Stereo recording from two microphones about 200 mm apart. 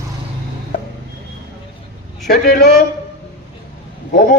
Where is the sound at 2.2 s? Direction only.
50° left (ahead or behind).